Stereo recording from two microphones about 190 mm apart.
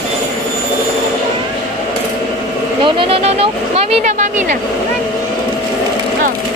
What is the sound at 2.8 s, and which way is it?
Vehicle, 30° right (ahead or behind).